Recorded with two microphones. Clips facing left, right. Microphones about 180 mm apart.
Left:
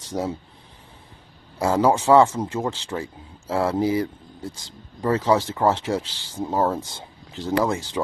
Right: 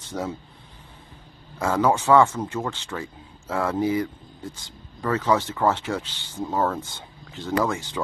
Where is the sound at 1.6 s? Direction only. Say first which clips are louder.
Left 2 dB; 25° left (ahead or behind).